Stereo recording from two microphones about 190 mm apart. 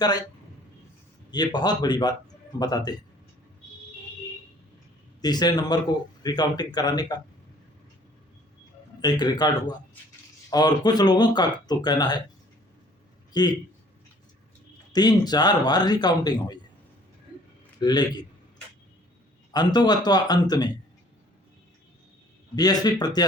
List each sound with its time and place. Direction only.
0.0 s speech: 20° left (ahead or behind)
1.3 s speech: 20° left (ahead or behind)
5.2 s speech: 20° left (ahead or behind)
9.0 s speech: 20° left (ahead or behind)
13.3 s speech: 20° left (ahead or behind)
14.9 s speech: 20° left (ahead or behind)
17.7 s speech: 20° left (ahead or behind)
19.5 s speech: 20° left (ahead or behind)
22.5 s speech: 20° left (ahead or behind)